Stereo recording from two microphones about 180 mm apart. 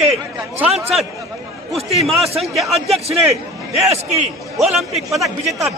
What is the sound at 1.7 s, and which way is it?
A man's voice, centre (ahead or behind).